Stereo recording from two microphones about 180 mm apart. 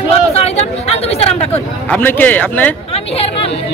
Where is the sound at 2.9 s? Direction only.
35° left (ahead or behind).